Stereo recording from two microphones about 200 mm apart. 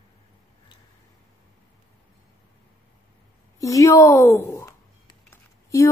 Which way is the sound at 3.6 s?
15° left (ahead or behind).